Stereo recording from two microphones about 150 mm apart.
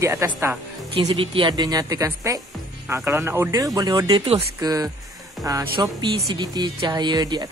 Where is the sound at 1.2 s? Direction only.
35° right (ahead or behind).